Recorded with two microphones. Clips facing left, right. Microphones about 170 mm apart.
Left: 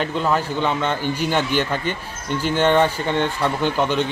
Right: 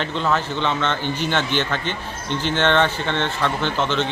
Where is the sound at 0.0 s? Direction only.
10° left (ahead or behind).